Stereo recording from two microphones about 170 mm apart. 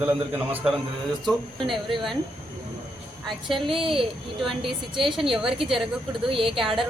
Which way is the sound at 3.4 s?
30° right (ahead or behind).